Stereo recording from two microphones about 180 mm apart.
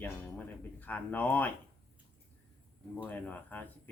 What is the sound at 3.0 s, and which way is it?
Speech, 10° left (ahead or behind).